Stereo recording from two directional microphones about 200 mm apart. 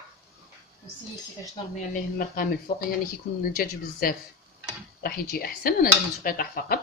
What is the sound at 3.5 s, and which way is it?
Speech, 45° left (ahead or behind).